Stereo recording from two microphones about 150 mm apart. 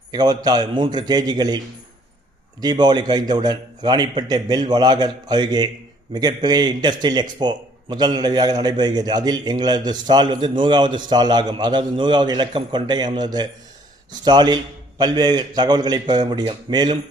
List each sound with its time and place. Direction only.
0.1 s a man's voice: 25° right (ahead or behind)